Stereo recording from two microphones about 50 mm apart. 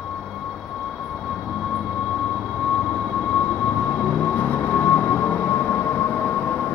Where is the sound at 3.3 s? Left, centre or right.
Centre.